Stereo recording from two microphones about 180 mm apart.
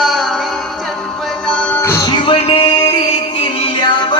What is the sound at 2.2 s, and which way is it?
Music, 30° left (ahead or behind).